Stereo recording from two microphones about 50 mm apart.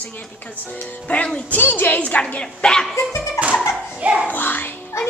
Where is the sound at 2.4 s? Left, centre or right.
Centre.